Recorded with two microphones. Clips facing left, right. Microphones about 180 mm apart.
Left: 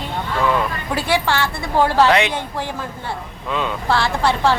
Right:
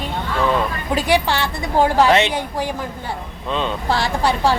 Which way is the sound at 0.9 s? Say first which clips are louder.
Right 2 dB; 15° right (ahead or behind).